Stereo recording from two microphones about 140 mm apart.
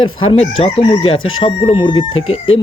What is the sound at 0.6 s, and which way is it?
Crowing, 45° left (ahead or behind).